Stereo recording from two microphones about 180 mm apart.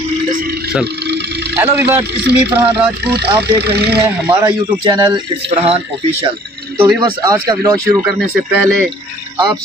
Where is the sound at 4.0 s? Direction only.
10° right (ahead or behind).